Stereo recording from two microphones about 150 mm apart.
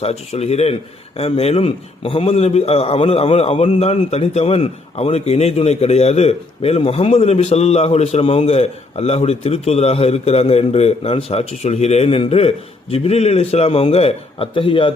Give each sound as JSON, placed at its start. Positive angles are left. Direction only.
{"t": 0.0, "sound": "a man's voice", "side_deg": 45}